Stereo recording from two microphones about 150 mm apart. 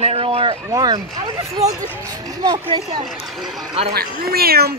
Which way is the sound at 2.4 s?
30° right (ahead or behind).